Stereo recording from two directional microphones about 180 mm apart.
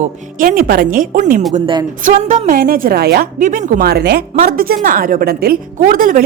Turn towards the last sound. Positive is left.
turn(degrees=-50)  # may be behind; listen again after turning